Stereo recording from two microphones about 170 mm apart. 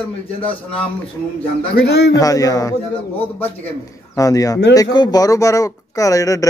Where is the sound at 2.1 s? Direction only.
20° left (ahead or behind).